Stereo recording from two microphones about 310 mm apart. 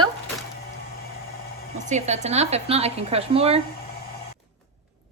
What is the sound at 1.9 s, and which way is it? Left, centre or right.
A woman's voice, right.